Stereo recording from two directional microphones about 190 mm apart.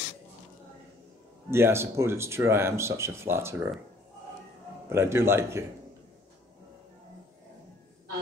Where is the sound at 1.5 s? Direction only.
15° right (ahead or behind).